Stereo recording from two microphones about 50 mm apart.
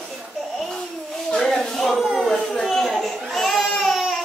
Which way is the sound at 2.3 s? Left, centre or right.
Centre.